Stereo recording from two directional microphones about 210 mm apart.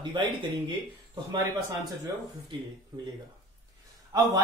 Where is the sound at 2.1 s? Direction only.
15° right (ahead or behind).